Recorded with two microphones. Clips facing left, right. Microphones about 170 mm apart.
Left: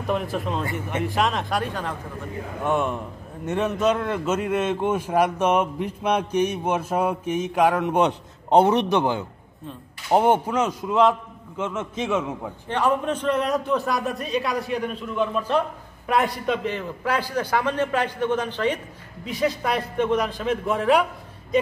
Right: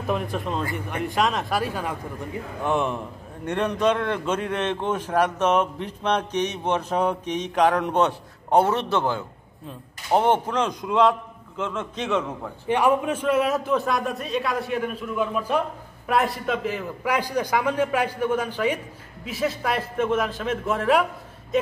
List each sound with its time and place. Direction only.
0.0 s a man's voice: centre (ahead or behind)
8.0 s speech: 20° left (ahead or behind)
12.6 s a man's voice: 10° right (ahead or behind)